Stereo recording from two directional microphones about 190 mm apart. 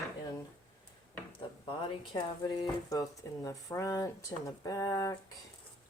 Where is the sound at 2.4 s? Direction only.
20° left (ahead or behind).